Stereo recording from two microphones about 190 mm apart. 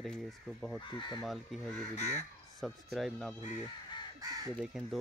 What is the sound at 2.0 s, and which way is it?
Speech, 35° left (ahead or behind).